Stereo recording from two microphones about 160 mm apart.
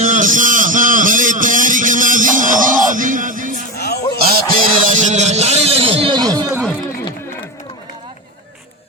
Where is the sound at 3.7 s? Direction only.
90° left.